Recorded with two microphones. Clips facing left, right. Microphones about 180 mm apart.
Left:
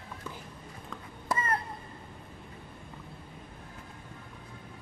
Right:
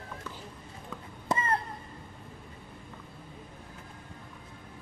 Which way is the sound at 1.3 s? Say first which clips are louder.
Right 2 dB; 25° right (ahead or behind).